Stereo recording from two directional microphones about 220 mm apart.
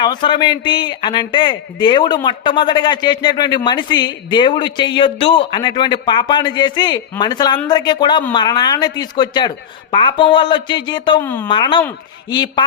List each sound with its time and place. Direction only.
0.0 s a man's voice: 20° left (ahead or behind)